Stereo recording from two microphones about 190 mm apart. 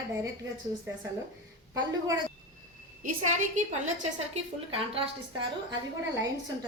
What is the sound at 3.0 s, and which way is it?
Speech, 40° right (ahead or behind).